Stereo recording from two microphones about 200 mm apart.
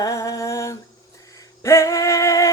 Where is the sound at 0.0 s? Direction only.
15° left (ahead or behind).